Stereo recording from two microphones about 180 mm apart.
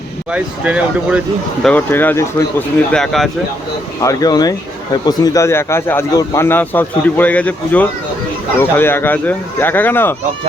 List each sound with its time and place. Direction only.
0.3 s speech: 5° right (ahead or behind)
1.6 s speech: 10° left (ahead or behind)
4.0 s speech: 20° left (ahead or behind)